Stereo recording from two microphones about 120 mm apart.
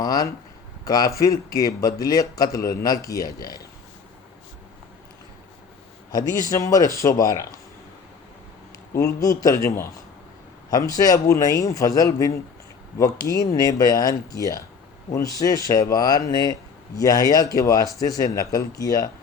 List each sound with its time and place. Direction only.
0.0 s a man's voice: 30° left (ahead or behind)
6.1 s a man's voice: 30° left (ahead or behind)
9.0 s a man's voice: 30° left (ahead or behind)